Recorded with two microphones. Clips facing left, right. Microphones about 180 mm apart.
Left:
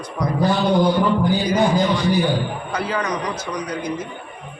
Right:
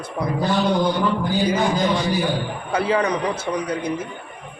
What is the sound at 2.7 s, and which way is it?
Speech, 30° right (ahead or behind).